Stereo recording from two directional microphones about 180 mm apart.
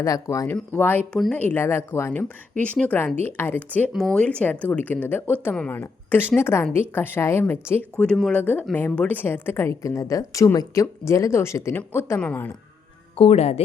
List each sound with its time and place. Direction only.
0.0 s a woman's voice: 20° left (ahead or behind)
13.1 s speech: 35° left (ahead or behind)